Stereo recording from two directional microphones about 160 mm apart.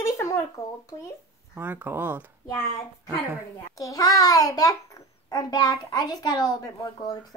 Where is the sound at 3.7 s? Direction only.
20° left (ahead or behind).